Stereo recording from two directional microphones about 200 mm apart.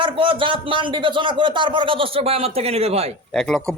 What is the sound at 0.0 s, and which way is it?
Speech, 25° right (ahead or behind).